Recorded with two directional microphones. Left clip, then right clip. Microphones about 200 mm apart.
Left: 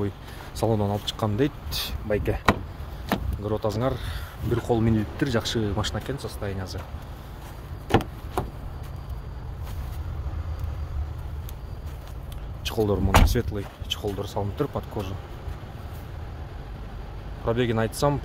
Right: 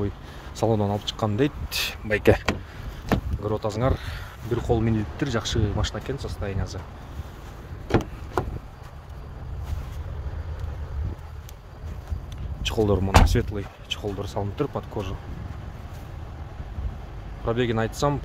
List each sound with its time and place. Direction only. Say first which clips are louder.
0.6 s speech: right 1 dB; 15° right (ahead or behind)
1.7 s speech: right 4 dB; 35° right (ahead or behind)
2.0 s speech: right 7 dB; 55° right (ahead or behind)
3.1 s speech: right 1 dB; 15° right (ahead or behind)
12.6 s speech: right 2 dB; 15° right (ahead or behind)
13.6 s speech: even; centre (ahead or behind)
17.5 s speech: even; centre (ahead or behind)